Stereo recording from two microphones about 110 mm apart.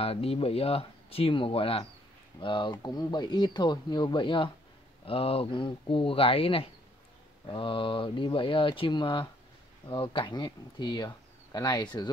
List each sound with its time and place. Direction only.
0.0 s speech: 60° left (ahead or behind)
2.4 s speech: 45° left (ahead or behind)
5.0 s speech: 55° left (ahead or behind); by 12.1 s 40° left (ahead or behind)